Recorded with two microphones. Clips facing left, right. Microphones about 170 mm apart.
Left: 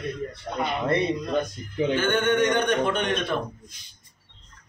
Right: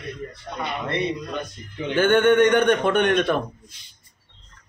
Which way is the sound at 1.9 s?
60° right (ahead or behind).